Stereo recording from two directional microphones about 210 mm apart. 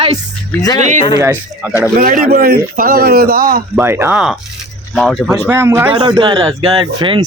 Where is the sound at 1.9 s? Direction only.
45° right (ahead or behind).